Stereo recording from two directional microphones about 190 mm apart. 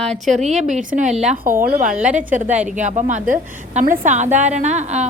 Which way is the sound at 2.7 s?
40° right (ahead or behind).